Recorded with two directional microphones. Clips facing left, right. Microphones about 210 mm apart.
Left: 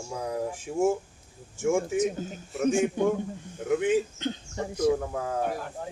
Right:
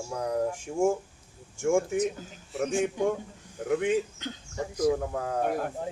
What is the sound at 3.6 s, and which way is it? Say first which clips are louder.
Speech: left 2 dB; centre (ahead or behind).